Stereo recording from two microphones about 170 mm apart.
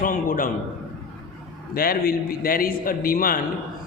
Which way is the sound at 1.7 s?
60° left (ahead or behind).